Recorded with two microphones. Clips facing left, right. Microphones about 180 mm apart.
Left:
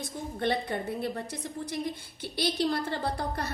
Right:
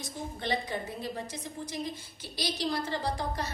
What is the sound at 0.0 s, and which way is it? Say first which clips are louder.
A woman's voice: left 5 dB; 60° left (ahead or behind).